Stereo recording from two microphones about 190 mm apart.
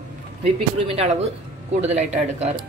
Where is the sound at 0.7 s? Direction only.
30° right (ahead or behind).